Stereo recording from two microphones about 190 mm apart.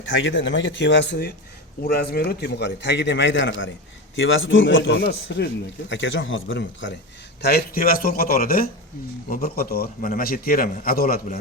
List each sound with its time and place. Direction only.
0.0 s a man's voice: 80° left
4.1 s a man's voice: 90° left
5.0 s a man's voice: 60° left (ahead or behind)
5.9 s a man's voice: 75° left (ahead or behind)
7.4 s speech: 55° left (ahead or behind)